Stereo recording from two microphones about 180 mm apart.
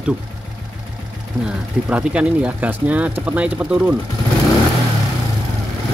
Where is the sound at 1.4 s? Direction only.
5° right (ahead or behind).